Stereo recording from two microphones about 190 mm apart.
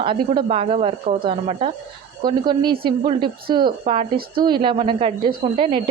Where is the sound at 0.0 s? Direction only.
25° right (ahead or behind).